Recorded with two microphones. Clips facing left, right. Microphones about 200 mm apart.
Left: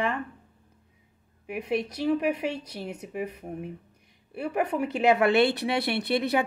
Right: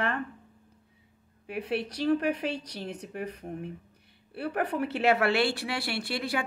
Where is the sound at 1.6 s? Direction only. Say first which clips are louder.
Left 2 dB; 10° left (ahead or behind).